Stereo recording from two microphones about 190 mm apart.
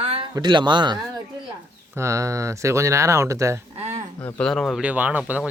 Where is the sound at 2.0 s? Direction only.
15° right (ahead or behind).